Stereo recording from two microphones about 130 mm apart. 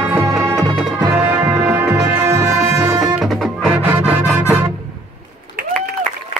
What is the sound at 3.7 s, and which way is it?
Music, 15° right (ahead or behind).